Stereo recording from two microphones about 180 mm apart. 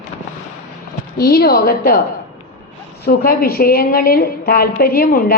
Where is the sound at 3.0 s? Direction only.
55° left (ahead or behind).